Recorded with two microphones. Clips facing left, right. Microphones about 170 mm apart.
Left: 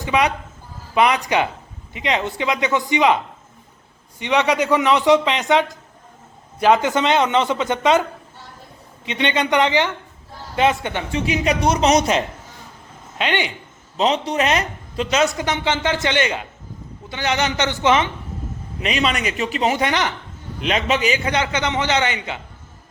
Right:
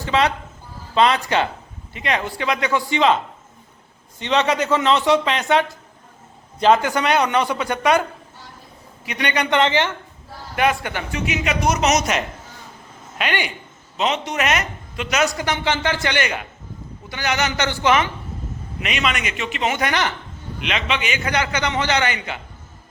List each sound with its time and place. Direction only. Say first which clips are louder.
0.0 s speech: even; 15° left (ahead or behind)
4.2 s speech: left 1 dB; 15° left (ahead or behind)
6.8 s speech: left 1 dB; 20° left (ahead or behind)
9.0 s speech: left 2 dB; 25° left (ahead or behind)
13.9 s speech: left 3 dB; 35° left (ahead or behind)
18.8 s a man's voice: left 3 dB; 35° left (ahead or behind)
19.9 s speech: left 1 dB; 20° left (ahead or behind)
20.6 s speech: left 4 dB; 40° left (ahead or behind); by 22.4 s 20° left (ahead or behind)